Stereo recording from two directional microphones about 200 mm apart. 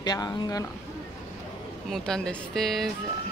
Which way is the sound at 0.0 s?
20° left (ahead or behind).